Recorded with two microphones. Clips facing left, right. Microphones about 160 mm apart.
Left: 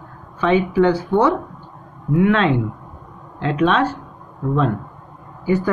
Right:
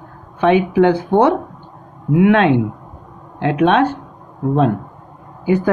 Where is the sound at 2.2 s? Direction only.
70° right (ahead or behind).